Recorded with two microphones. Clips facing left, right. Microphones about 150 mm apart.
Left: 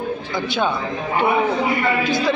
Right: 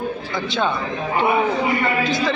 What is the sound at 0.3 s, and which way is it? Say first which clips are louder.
Speech: left 1 dB; 5° left (ahead or behind).